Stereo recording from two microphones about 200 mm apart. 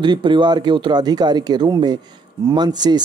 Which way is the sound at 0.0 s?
20° right (ahead or behind).